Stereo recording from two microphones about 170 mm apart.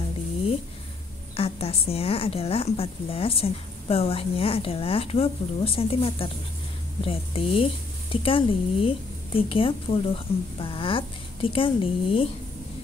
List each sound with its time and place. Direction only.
1.3 s a woman's voice: 35° left (ahead or behind)